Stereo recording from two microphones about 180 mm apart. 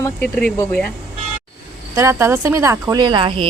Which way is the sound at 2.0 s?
15° right (ahead or behind).